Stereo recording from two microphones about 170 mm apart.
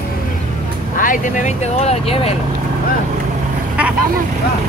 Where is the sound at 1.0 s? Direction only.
50° left (ahead or behind).